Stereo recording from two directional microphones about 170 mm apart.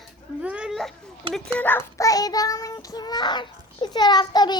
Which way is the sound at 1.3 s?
10° left (ahead or behind).